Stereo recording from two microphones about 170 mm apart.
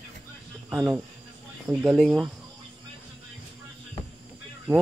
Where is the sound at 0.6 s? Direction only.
15° right (ahead or behind).